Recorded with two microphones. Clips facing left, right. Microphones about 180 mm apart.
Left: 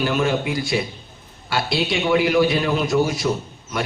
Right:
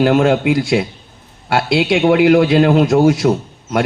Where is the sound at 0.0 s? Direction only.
75° right (ahead or behind).